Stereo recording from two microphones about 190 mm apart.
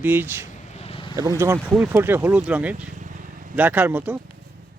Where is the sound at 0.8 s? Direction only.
30° left (ahead or behind).